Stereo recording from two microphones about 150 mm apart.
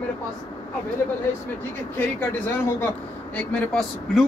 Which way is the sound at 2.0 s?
15° left (ahead or behind).